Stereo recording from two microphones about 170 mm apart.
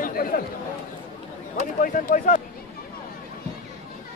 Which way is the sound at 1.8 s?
55° left (ahead or behind).